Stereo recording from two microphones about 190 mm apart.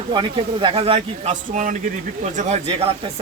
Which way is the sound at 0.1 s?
25° right (ahead or behind).